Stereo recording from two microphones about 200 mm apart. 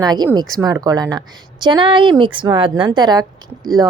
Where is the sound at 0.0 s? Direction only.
20° right (ahead or behind).